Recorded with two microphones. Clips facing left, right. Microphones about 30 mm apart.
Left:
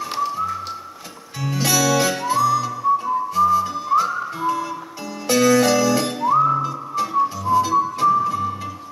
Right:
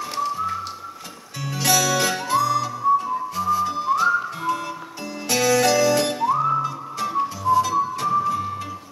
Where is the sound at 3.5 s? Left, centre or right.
Centre.